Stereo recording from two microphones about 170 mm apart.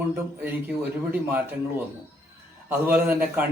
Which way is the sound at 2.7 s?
10° right (ahead or behind).